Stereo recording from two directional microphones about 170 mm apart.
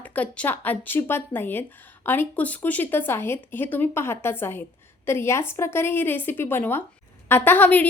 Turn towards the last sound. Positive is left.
turn(degrees=10)  # may be behind; listen again after turning